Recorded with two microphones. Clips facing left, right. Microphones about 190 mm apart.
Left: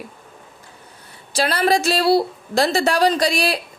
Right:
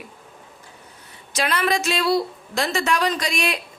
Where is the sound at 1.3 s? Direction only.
35° left (ahead or behind).